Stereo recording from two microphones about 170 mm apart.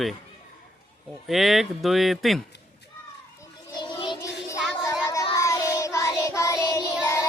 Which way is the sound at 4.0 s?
20° left (ahead or behind).